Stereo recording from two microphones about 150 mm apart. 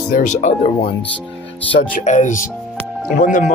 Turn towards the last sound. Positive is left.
turn(degrees=60)  # may be behind; listen again after turning